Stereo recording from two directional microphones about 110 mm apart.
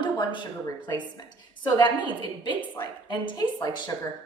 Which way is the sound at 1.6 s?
40° left (ahead or behind).